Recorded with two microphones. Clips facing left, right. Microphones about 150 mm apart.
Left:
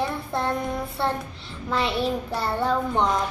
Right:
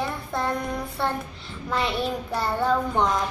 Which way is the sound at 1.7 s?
Centre (ahead or behind).